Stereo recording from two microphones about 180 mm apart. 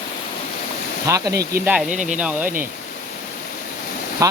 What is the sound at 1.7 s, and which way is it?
Speech, 5° right (ahead or behind).